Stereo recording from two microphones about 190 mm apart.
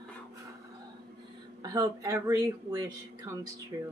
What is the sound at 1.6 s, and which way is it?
Speech, 20° right (ahead or behind).